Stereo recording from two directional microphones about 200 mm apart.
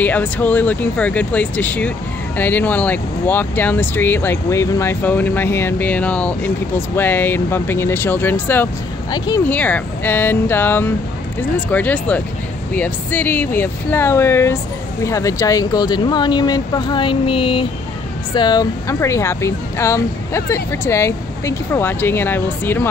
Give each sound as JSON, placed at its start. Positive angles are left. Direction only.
{"t": 0.0, "sound": "speech", "side_deg": 10}
{"t": 9.5, "sound": "speech", "side_deg": 5}